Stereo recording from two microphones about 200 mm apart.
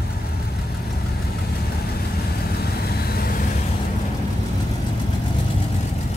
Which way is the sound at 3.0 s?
50° left (ahead or behind).